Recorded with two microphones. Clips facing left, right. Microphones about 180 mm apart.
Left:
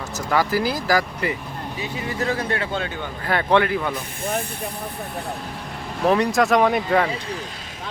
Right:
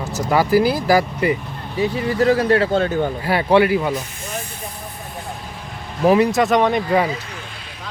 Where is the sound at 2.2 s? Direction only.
35° right (ahead or behind).